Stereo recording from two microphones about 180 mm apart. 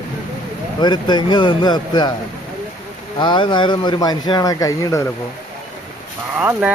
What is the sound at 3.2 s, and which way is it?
Speech, 25° left (ahead or behind).